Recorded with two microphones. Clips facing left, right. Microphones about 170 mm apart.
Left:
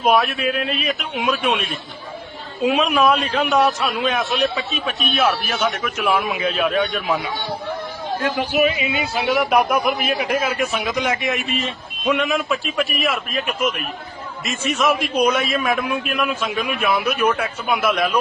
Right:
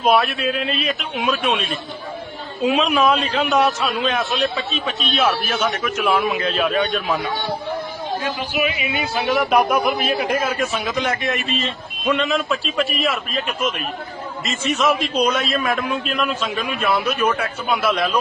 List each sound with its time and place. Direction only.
0.2 s a man's voice: 5° left (ahead or behind)
5.6 s a man's voice: centre (ahead or behind)
8.2 s speech: 50° left (ahead or behind)
9.2 s a man's voice: 10° left (ahead or behind)